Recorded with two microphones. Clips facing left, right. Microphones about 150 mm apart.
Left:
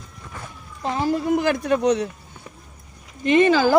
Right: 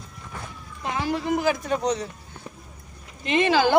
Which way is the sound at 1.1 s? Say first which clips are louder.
Left 2 dB; 55° left (ahead or behind).